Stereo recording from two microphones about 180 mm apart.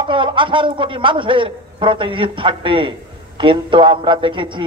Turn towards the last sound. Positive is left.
turn(degrees=-25)  # may be behind; listen again after turning